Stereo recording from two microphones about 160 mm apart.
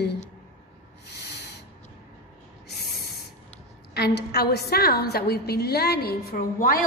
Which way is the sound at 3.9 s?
90° left.